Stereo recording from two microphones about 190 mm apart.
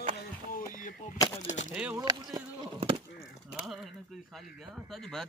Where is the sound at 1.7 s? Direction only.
5° right (ahead or behind).